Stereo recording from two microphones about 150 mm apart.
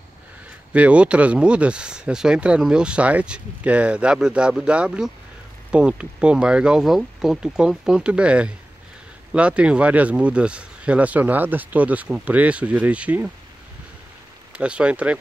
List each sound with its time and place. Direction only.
0.7 s speech: 10° right (ahead or behind)
14.6 s speech: 5° right (ahead or behind)